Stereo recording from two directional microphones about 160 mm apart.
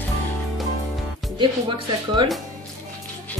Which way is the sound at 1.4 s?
30° right (ahead or behind).